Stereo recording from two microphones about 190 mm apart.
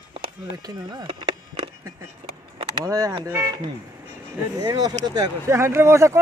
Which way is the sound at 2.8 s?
15° right (ahead or behind).